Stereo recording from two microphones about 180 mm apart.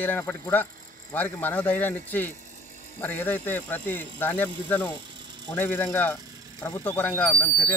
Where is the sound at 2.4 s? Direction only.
40° right (ahead or behind).